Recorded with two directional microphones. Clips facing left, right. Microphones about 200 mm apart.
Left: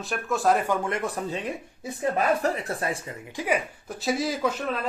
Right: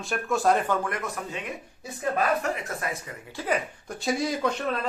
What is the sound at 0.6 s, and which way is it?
Speech, 15° left (ahead or behind).